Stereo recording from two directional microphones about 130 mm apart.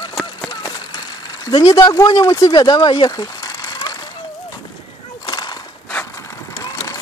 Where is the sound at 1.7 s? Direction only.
30° left (ahead or behind).